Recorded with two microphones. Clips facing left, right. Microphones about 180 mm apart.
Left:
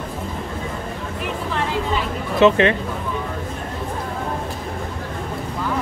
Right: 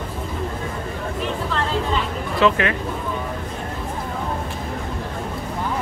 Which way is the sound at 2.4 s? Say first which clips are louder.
Left 5 dB; 25° left (ahead or behind).